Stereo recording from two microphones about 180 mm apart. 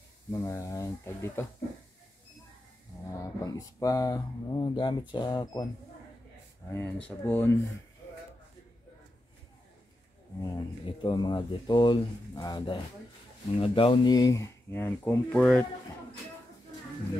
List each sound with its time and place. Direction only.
0.3 s speech: 15° left (ahead or behind)
3.1 s speech: 20° left (ahead or behind)
6.7 s speech: 5° left (ahead or behind)
10.5 s speech: 25° left (ahead or behind); by 15.6 s centre (ahead or behind)